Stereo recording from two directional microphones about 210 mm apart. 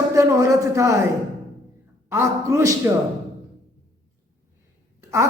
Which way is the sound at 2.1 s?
10° right (ahead or behind).